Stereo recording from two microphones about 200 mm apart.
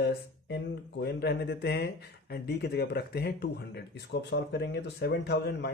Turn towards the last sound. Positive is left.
turn(degrees=55)  # may be behind; listen again after turning